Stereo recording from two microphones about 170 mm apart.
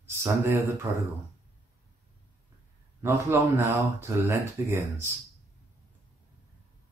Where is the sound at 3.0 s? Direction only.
15° right (ahead or behind).